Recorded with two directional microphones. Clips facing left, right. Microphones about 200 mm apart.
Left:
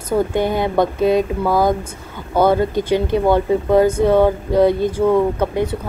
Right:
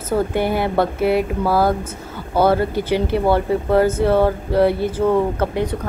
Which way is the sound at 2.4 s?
15° left (ahead or behind).